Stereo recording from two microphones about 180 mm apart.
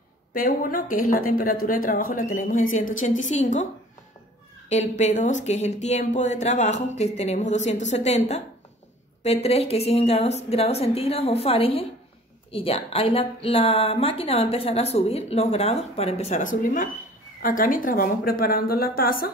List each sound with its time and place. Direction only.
0.3 s speech: 50° left (ahead or behind)
4.6 s a woman's voice: 40° left (ahead or behind)